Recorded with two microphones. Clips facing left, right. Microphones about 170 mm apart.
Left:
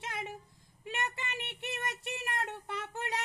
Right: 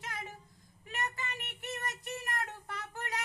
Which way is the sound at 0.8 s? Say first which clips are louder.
Left 1 dB; 25° left (ahead or behind).